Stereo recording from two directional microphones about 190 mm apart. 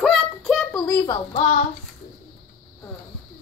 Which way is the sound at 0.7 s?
15° left (ahead or behind).